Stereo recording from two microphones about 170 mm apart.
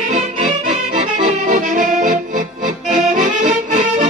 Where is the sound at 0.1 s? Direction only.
45° right (ahead or behind).